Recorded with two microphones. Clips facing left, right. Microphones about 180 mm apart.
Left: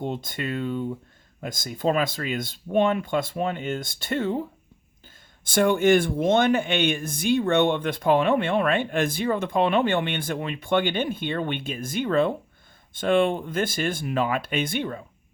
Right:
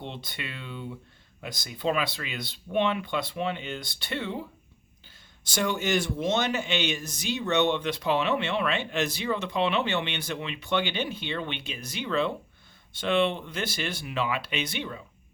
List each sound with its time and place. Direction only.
0.0 s speech: 45° left (ahead or behind)
5.5 s speech: 55° left (ahead or behind)